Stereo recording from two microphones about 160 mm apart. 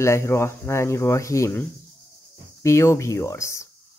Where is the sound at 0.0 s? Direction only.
15° left (ahead or behind).